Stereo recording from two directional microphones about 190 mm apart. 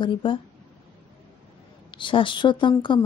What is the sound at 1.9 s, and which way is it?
Speech, 25° left (ahead or behind).